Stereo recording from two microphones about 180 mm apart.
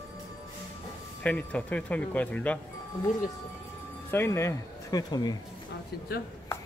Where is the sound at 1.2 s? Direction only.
10° left (ahead or behind).